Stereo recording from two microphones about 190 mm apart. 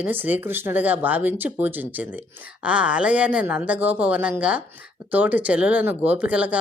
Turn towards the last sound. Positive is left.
turn(degrees=-5)  # may be behind; listen again after turning